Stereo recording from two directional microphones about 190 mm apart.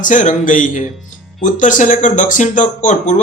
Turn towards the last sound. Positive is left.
turn(degrees=40)  # may be behind; listen again after turning